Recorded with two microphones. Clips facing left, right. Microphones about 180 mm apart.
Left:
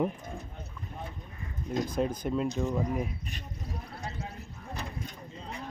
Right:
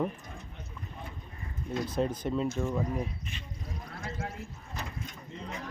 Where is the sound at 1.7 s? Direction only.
45° left (ahead or behind).